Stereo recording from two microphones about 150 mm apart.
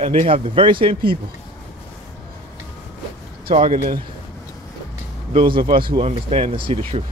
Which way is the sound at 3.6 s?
65° right (ahead or behind).